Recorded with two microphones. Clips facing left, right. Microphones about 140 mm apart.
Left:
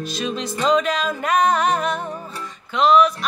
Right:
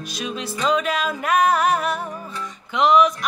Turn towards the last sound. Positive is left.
turn(degrees=-20)  # may be behind; listen again after turning